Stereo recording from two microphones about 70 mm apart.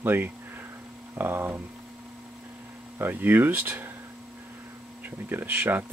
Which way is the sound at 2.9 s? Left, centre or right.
Right.